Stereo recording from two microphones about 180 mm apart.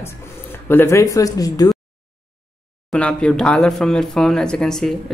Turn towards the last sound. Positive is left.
turn(degrees=5)  # may be behind; listen again after turning